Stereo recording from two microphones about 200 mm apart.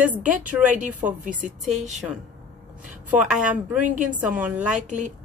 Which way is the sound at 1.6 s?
35° right (ahead or behind).